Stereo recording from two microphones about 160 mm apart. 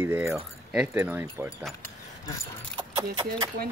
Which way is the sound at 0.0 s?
15° right (ahead or behind).